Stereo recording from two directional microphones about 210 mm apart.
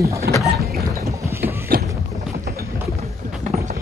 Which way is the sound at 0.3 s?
50° right (ahead or behind).